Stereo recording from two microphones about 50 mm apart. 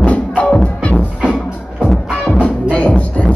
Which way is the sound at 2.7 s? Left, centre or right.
Left.